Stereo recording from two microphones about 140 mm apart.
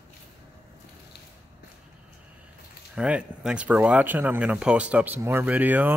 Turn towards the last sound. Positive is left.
turn(degrees=-10)  # may be behind; listen again after turning